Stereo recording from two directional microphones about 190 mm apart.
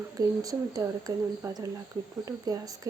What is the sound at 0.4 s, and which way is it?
Speech, 20° right (ahead or behind).